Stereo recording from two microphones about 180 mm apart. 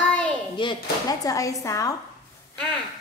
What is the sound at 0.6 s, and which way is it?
A child's voice, 25° left (ahead or behind).